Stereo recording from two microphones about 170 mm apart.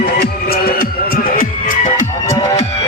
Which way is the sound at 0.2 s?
65° left (ahead or behind).